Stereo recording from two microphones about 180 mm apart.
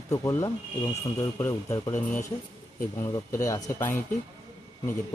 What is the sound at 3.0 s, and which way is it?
Speech, 15° left (ahead or behind).